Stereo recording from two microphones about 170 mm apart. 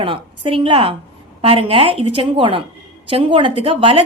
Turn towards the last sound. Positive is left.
turn(degrees=-30)  # may be behind; listen again after turning